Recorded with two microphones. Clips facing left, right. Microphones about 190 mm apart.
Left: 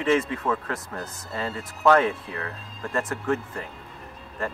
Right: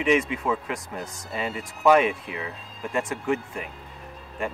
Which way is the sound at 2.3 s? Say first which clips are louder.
Even; centre (ahead or behind).